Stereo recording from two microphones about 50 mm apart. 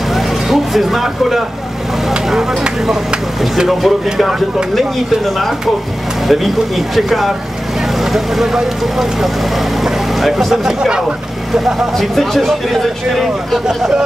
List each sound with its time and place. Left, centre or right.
0.1 s vehicle: centre
2.6 s speech: centre
3.6 s speech: centre
13.7 s speech: centre